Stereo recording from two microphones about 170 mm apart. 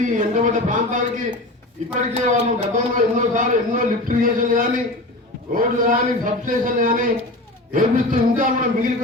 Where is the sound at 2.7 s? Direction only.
50° right (ahead or behind).